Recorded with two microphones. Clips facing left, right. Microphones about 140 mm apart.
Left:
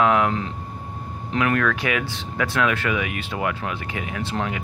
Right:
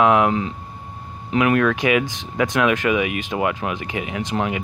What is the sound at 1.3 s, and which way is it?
Speech, 15° right (ahead or behind).